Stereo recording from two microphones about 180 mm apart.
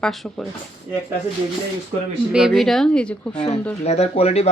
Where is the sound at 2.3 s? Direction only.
Centre (ahead or behind).